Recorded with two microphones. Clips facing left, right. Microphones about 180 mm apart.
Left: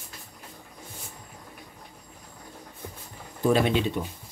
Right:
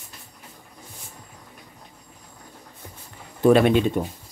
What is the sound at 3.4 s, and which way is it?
Speech, 60° right (ahead or behind).